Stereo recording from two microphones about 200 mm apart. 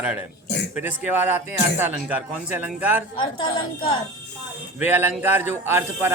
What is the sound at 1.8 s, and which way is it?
Speech, 10° right (ahead or behind).